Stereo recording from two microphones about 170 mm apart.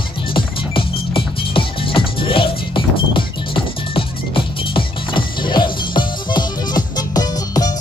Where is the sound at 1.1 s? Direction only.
30° left (ahead or behind).